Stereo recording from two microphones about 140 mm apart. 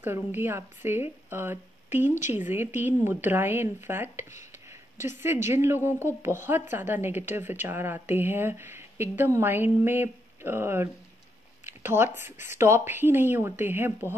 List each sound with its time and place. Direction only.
0.0 s speech: 15° right (ahead or behind)